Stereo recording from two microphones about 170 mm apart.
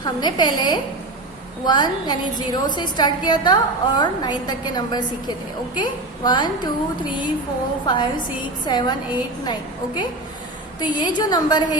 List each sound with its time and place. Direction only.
0.0 s a woman's voice: 25° left (ahead or behind)
7.9 s a woman's voice: 25° left (ahead or behind)